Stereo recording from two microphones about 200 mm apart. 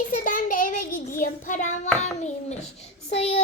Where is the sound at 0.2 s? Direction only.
45° left (ahead or behind).